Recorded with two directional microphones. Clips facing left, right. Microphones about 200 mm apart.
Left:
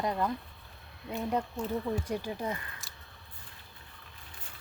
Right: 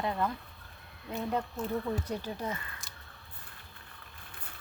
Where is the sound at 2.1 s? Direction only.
15° left (ahead or behind).